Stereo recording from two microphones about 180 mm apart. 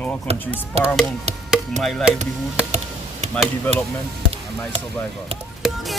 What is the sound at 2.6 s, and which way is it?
Insect, 35° right (ahead or behind).